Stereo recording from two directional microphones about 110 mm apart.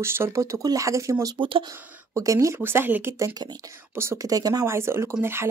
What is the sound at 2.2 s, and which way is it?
Speech, 30° right (ahead or behind).